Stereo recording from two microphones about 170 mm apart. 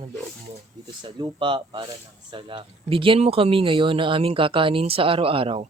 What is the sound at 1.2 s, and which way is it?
Speech, 30° right (ahead or behind).